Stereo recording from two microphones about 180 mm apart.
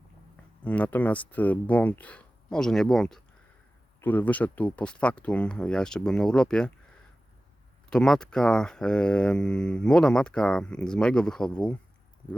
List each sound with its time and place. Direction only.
0.6 s speech: 10° left (ahead or behind)
7.9 s speech: 5° left (ahead or behind)